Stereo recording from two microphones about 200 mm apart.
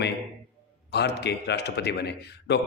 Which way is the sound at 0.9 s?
55° left (ahead or behind).